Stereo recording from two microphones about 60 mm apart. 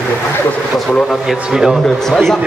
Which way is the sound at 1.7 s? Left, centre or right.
Centre.